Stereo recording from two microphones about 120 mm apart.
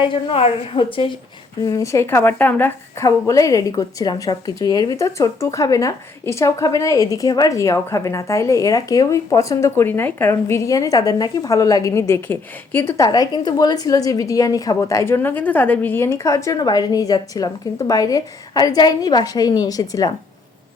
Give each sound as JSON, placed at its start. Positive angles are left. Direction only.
{"t": 0.0, "sound": "a woman's voice", "side_deg": 45}
{"t": 1.6, "sound": "a woman's voice", "side_deg": 25}
{"t": 3.1, "sound": "a woman's voice", "side_deg": 25}
{"t": 13.0, "sound": "a woman's voice", "side_deg": 30}